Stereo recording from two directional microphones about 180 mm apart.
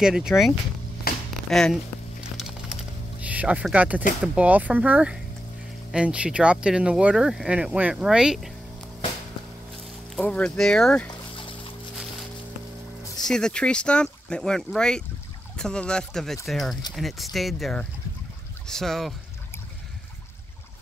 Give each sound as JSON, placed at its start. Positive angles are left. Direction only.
{"t": 0.0, "sound": "speech", "side_deg": -5}
{"t": 1.3, "sound": "a sound", "side_deg": 0}
{"t": 4.4, "sound": "speech", "side_deg": -10}
{"t": 10.1, "sound": "speech", "side_deg": 5}
{"t": 11.3, "sound": "music", "side_deg": 30}
{"t": 13.2, "sound": "speech", "side_deg": 5}